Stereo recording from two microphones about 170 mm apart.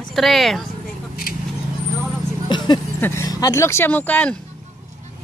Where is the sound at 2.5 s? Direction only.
25° left (ahead or behind).